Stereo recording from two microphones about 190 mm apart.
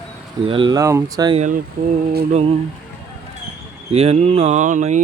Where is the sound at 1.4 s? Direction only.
40° right (ahead or behind).